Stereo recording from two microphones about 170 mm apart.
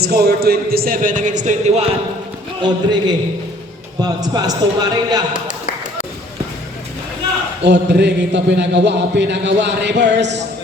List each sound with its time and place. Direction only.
0.0 s speech: 65° right (ahead or behind); by 1.4 s 50° right (ahead or behind)
1.5 s speech: 40° right (ahead or behind)
2.6 s a man's voice: 25° right (ahead or behind)
7.6 s a man's voice: 80° right